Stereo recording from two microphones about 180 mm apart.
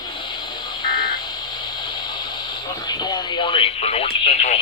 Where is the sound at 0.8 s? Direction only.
25° left (ahead or behind).